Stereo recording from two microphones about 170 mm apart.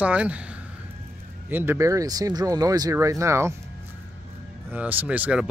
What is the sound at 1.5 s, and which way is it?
Speech, 15° right (ahead or behind).